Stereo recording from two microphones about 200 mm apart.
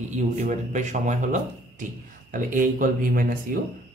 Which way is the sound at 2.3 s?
40° right (ahead or behind).